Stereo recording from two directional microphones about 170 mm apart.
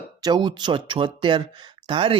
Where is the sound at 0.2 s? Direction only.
25° right (ahead or behind).